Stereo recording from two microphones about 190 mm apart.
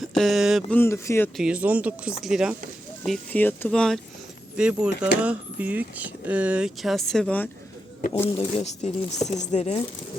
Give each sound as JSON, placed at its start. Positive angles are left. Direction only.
{"t": 0.2, "sound": "speech", "side_deg": 0}
{"t": 0.8, "sound": "speech", "side_deg": 15}
{"t": 1.4, "sound": "speech", "side_deg": -5}
{"t": 3.0, "sound": "speech", "side_deg": 10}
{"t": 8.5, "sound": "speech", "side_deg": 35}